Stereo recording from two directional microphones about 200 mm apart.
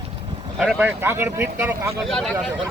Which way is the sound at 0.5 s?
5° right (ahead or behind).